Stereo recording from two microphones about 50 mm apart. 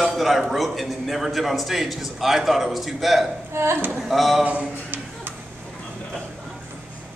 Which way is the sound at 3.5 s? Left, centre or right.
Right.